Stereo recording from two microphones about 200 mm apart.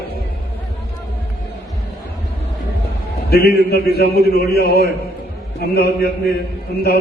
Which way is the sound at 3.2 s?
50° left (ahead or behind).